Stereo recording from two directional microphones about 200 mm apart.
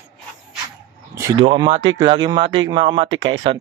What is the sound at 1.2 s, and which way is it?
Speech, 20° right (ahead or behind).